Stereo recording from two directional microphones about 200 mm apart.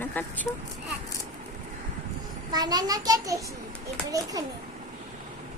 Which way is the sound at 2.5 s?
20° right (ahead or behind).